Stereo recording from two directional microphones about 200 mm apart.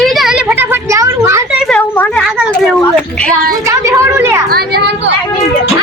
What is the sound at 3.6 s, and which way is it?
Speech, 15° right (ahead or behind).